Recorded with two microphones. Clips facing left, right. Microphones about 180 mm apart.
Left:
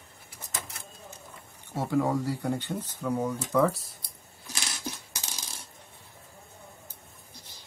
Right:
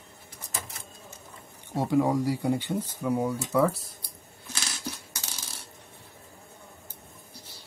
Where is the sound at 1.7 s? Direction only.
15° right (ahead or behind).